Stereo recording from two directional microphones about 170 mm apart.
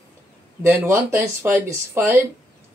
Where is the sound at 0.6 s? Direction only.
15° right (ahead or behind).